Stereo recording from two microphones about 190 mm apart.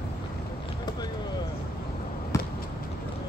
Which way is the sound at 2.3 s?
15° left (ahead or behind).